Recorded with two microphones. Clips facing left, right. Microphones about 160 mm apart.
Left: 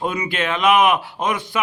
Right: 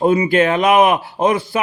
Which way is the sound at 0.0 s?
35° right (ahead or behind).